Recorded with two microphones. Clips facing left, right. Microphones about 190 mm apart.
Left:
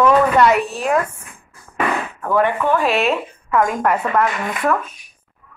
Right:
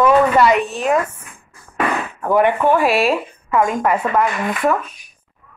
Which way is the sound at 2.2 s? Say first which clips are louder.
Right 3 dB; 15° right (ahead or behind).